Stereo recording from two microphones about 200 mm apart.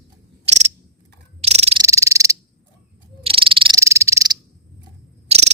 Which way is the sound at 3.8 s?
15° right (ahead or behind).